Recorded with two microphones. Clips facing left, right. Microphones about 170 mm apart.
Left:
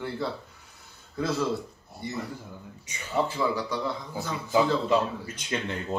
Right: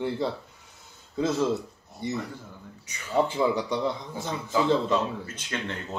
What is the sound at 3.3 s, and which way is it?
A man's voice, 20° right (ahead or behind).